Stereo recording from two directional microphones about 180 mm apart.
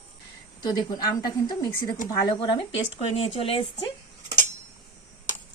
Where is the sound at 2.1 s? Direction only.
25° left (ahead or behind).